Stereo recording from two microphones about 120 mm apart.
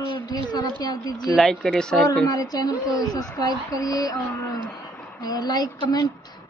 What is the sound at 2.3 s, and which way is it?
Speech, 30° left (ahead or behind).